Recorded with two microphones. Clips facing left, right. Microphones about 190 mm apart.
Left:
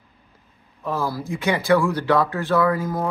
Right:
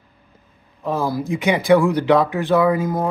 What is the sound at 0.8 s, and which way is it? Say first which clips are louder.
Speech: right 4 dB; 20° right (ahead or behind).